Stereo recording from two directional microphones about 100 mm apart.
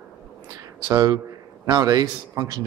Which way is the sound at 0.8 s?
40° right (ahead or behind).